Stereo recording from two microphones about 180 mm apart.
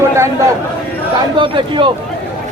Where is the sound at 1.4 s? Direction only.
25° right (ahead or behind).